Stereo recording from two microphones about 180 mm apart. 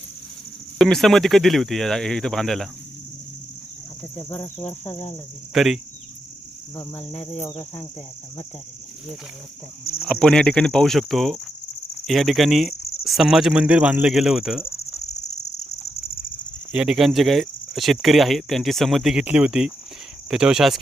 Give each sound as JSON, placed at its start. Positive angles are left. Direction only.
{"t": 0.8, "sound": "speech", "side_deg": 0}
{"t": 4.2, "sound": "cricket", "side_deg": 10}
{"t": 5.5, "sound": "speech", "side_deg": 0}
{"t": 10.0, "sound": "speech", "side_deg": 0}
{"t": 15.0, "sound": "cricket", "side_deg": 40}
{"t": 16.7, "sound": "speech", "side_deg": -5}